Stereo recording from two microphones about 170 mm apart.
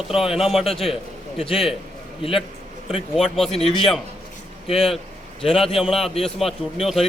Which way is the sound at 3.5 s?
35° left (ahead or behind).